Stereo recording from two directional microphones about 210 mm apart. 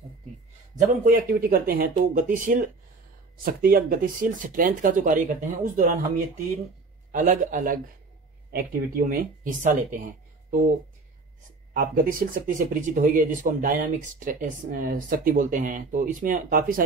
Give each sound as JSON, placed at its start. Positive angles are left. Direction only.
{"t": 0.7, "sound": "speech", "side_deg": -40}
{"t": 7.1, "sound": "speech", "side_deg": -40}
{"t": 11.7, "sound": "speech", "side_deg": -40}